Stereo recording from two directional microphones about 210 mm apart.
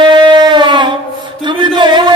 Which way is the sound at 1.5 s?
20° right (ahead or behind).